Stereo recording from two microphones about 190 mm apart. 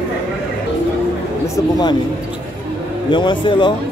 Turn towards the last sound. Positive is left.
turn(degrees=25)  # may be behind; listen again after turning